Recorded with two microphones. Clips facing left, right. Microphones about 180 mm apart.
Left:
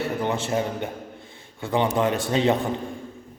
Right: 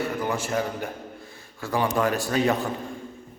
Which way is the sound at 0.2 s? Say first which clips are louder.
Left 2 dB; 25° left (ahead or behind).